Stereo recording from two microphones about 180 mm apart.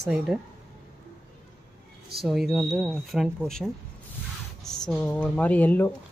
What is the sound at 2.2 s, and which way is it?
Speech, centre (ahead or behind).